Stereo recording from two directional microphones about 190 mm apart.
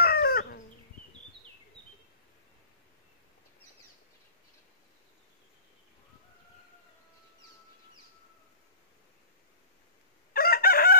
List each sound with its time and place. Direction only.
0.0 s chicken: 55° left (ahead or behind)
10.3 s chicken: 50° left (ahead or behind)